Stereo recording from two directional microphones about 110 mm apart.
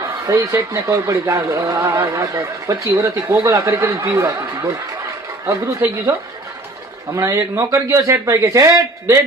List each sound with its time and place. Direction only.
0.3 s a man's voice: 30° right (ahead or behind)
5.5 s a man's voice: 30° right (ahead or behind)
7.2 s a man's voice: 25° right (ahead or behind)